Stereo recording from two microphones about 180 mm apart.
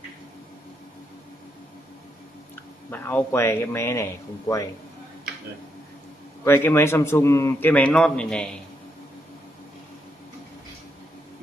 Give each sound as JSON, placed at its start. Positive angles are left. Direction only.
{"t": 2.9, "sound": "a man's voice", "side_deg": 10}
{"t": 6.4, "sound": "a man's voice", "side_deg": 15}